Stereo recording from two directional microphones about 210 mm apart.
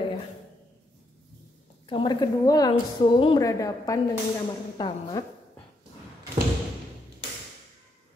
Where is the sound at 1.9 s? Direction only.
20° left (ahead or behind).